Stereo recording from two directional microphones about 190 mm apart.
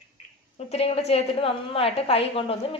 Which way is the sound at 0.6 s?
35° left (ahead or behind).